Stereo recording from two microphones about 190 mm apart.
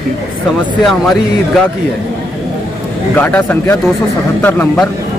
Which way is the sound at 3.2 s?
10° left (ahead or behind).